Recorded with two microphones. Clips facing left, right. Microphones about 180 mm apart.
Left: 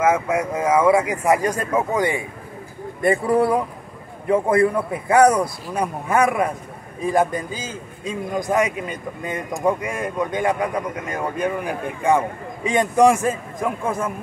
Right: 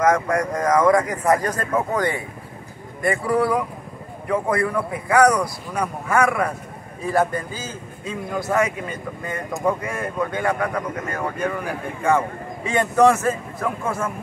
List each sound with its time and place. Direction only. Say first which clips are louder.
0.0 s speech: even; 5° left (ahead or behind)
3.0 s a man's voice: left 3 dB; 25° left (ahead or behind)